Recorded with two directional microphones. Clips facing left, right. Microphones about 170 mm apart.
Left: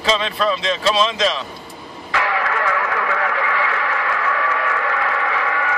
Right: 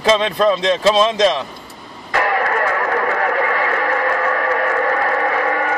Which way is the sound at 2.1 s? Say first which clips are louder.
Right 4 dB; 45° right (ahead or behind).